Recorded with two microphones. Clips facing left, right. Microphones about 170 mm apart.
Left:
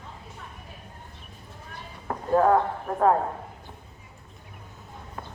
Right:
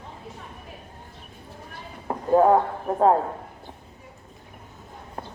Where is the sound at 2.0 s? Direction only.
20° right (ahead or behind).